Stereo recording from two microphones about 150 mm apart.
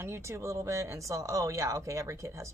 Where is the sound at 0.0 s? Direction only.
15° right (ahead or behind).